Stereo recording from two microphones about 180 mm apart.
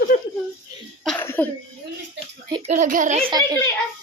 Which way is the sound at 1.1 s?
10° left (ahead or behind).